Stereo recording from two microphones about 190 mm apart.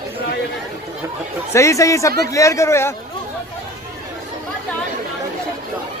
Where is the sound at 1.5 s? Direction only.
15° left (ahead or behind).